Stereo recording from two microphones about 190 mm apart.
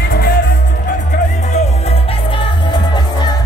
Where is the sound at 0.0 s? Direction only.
50° left (ahead or behind).